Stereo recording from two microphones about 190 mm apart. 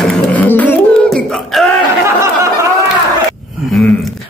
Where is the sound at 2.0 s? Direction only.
15° right (ahead or behind).